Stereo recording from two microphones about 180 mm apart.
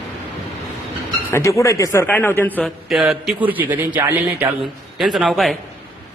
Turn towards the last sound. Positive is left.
turn(degrees=0)  # may be behind; listen again after turning